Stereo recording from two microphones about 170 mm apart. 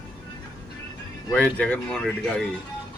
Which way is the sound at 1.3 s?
10° left (ahead or behind).